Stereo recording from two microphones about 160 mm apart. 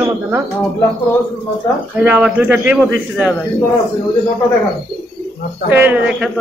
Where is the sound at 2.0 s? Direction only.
10° right (ahead or behind).